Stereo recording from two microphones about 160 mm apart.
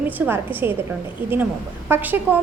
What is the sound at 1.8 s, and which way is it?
Speech, 15° right (ahead or behind).